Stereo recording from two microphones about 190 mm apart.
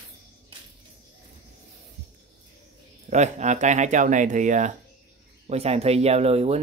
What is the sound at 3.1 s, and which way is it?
Speech, 40° right (ahead or behind).